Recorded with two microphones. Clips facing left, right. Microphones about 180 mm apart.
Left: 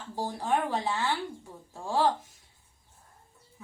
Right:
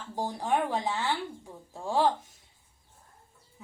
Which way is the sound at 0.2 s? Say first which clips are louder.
Even; 15° right (ahead or behind).